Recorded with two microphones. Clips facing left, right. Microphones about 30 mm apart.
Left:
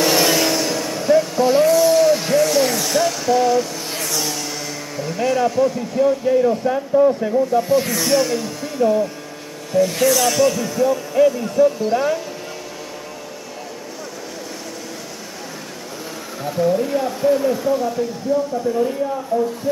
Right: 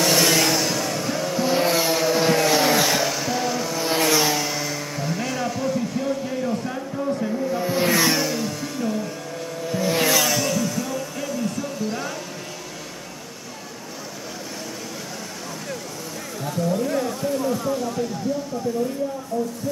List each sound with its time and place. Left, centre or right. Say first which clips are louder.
0.0 s vehicle: left 2 dB; centre
1.9 s a sound: left 5 dB; centre
2.3 s music: left 3 dB; centre
2.9 s music: left 5 dB; centre
4.0 s a sound: right 5 dB; right
4.3 s speech: right 2 dB; centre
7.5 s speech: left 10 dB; centre
7.8 s speech: right 4 dB; right
8.1 s speech: left 5 dB; centre
9.7 s speech: left 5 dB; centre
16.4 s speech: left 5 dB; centre
19.3 s speech: left 7 dB; left